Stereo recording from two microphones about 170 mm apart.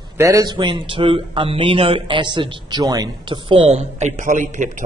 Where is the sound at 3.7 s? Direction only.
40° right (ahead or behind).